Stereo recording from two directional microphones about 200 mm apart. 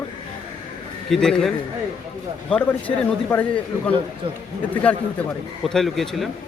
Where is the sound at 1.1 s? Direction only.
5° left (ahead or behind).